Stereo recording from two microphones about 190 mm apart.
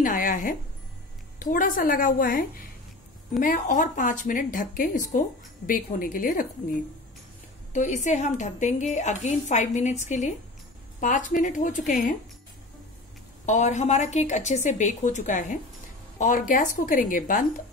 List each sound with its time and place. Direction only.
0.0 s speech: 45° left (ahead or behind)
7.7 s a woman's voice: 40° left (ahead or behind)
13.5 s a woman's voice: 40° left (ahead or behind)